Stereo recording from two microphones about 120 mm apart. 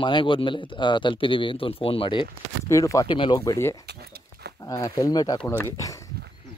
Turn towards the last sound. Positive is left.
turn(degrees=25)  # may be behind; listen again after turning